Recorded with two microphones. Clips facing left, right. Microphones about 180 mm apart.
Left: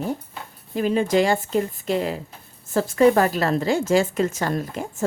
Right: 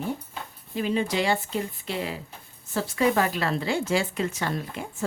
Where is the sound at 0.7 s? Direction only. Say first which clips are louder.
Left 6 dB; 45° left (ahead or behind).